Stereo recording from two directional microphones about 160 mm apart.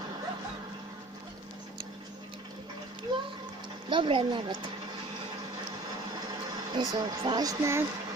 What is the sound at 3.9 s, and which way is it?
Speech, 30° right (ahead or behind).